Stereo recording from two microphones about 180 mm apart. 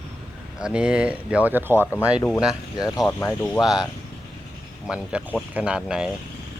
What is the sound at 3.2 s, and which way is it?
Speech, 15° left (ahead or behind).